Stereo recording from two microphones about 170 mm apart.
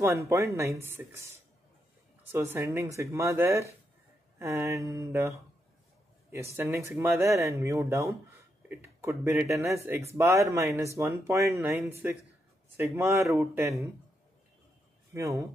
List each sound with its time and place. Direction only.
0.0 s speech: 15° right (ahead or behind)
15.1 s speech: 15° right (ahead or behind)